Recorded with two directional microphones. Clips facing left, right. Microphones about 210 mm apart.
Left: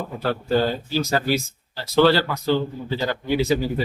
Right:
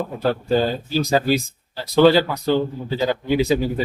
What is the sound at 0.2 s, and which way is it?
A man's voice, 15° right (ahead or behind).